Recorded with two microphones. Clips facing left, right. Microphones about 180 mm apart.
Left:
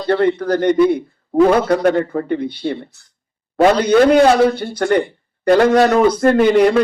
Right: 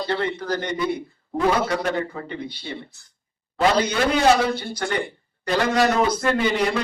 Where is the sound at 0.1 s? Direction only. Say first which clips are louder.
Left 13 dB; 55° left (ahead or behind).